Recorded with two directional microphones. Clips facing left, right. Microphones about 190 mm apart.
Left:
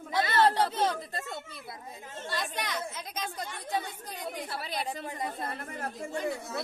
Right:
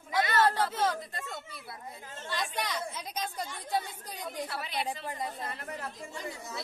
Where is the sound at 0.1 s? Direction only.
30° left (ahead or behind).